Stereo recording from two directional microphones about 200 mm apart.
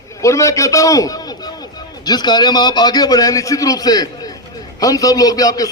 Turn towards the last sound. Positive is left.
turn(degrees=20)  # may be behind; listen again after turning